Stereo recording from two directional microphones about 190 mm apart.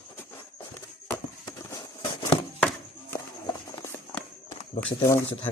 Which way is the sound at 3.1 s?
15° left (ahead or behind).